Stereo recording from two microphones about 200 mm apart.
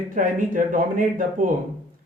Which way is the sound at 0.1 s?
40° right (ahead or behind).